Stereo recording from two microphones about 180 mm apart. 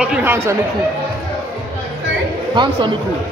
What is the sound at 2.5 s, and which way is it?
Speech, 25° right (ahead or behind).